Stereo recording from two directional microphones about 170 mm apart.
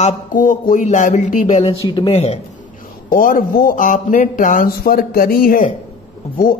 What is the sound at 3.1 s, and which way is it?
A man's voice, 55° left (ahead or behind).